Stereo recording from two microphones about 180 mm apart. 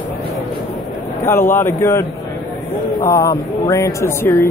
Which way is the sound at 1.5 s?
15° left (ahead or behind).